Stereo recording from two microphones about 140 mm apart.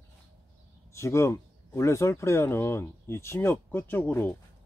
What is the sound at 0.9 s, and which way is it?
Speech, 20° left (ahead or behind).